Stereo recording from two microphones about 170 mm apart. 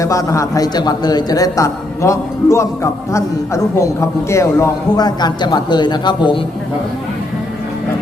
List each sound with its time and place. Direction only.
0.0 s a man's voice: 20° left (ahead or behind)